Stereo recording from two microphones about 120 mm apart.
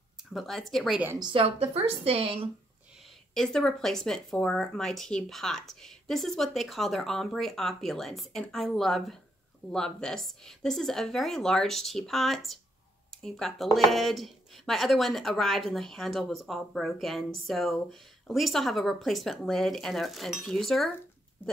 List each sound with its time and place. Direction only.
0.2 s a woman's voice: centre (ahead or behind)
1.2 s a woman's voice: 50° right (ahead or behind)
3.3 s a woman's voice: 5° left (ahead or behind)